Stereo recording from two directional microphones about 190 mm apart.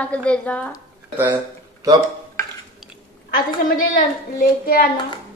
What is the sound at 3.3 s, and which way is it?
A woman's voice, 50° left (ahead or behind).